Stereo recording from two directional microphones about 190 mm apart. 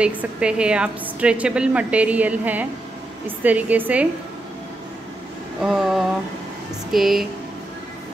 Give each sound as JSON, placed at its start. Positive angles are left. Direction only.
{"t": 0.0, "sound": "a woman's voice", "side_deg": -5}
{"t": 5.6, "sound": "a sound", "side_deg": -5}
{"t": 6.9, "sound": "speech", "side_deg": 0}